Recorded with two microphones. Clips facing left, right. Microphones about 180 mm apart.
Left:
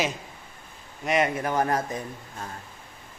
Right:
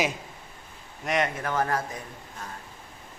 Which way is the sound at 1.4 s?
15° left (ahead or behind).